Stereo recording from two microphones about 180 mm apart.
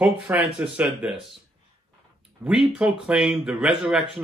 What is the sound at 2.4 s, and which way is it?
Speech, 10° right (ahead or behind).